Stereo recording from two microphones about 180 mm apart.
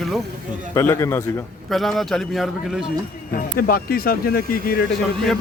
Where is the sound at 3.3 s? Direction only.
55° left (ahead or behind).